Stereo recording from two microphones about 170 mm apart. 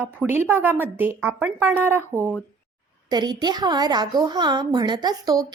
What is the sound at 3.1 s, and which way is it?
Speech, 25° right (ahead or behind).